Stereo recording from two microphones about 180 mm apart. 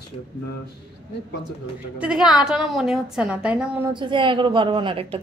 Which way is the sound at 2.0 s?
5° right (ahead or behind).